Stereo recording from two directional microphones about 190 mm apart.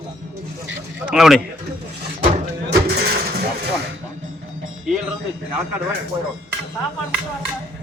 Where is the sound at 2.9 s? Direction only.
55° right (ahead or behind).